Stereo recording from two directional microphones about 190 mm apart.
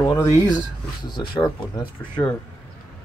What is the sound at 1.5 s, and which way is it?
Speech, 25° left (ahead or behind).